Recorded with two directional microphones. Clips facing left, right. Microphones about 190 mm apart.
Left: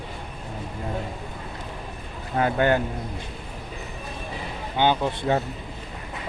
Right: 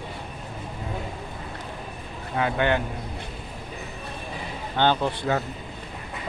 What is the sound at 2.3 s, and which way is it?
Speech, 40° left (ahead or behind).